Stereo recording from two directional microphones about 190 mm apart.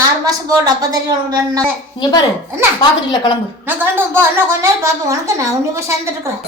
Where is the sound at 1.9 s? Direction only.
25° left (ahead or behind).